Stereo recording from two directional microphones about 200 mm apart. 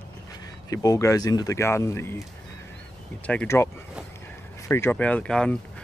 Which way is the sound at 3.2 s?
10° left (ahead or behind).